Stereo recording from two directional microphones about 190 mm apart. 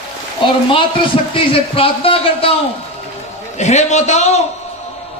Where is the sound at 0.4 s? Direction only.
25° left (ahead or behind).